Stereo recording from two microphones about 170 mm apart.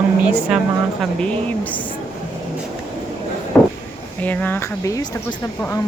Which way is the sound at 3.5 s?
5° left (ahead or behind).